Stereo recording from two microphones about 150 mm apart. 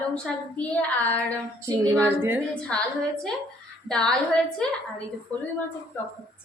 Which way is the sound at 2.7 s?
5° left (ahead or behind).